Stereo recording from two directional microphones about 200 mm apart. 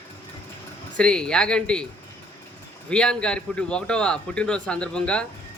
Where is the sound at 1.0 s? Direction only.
5° left (ahead or behind).